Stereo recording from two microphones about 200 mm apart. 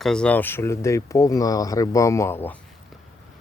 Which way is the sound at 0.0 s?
5° left (ahead or behind).